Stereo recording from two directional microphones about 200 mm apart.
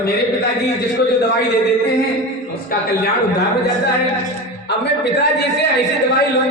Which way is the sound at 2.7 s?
45° left (ahead or behind).